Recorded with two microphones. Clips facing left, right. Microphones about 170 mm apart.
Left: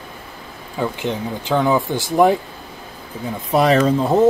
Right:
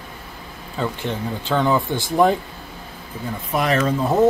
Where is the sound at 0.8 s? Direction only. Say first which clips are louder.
Left 2 dB; 15° left (ahead or behind).